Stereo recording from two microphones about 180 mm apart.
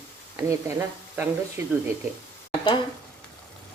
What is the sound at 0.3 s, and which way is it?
Speech, 15° right (ahead or behind).